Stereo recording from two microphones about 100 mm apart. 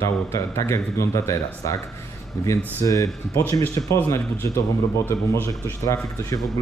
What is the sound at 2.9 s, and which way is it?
Speech, 30° left (ahead or behind).